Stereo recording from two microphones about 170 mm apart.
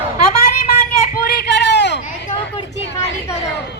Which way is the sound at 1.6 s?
90° left.